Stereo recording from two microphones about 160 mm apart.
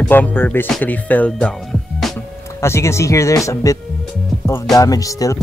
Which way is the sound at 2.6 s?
15° left (ahead or behind).